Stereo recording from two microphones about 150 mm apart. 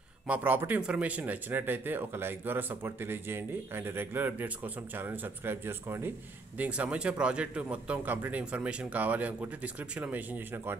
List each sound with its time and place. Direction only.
0.3 s speech: 10° right (ahead or behind)